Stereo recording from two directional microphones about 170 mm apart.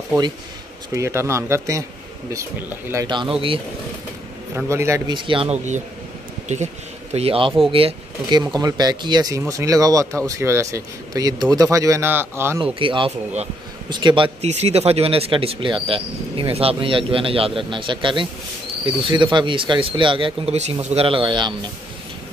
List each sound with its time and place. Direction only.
0.9 s speech: 15° right (ahead or behind)
2.9 s speech: 25° right (ahead or behind)
4.6 s speech: 15° right (ahead or behind)
7.2 s speech: 35° right (ahead or behind); by 12.5 s 15° right (ahead or behind)
12.7 s speech: 30° right (ahead or behind)